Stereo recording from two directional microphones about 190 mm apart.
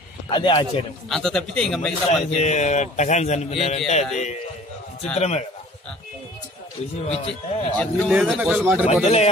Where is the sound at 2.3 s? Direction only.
40° left (ahead or behind).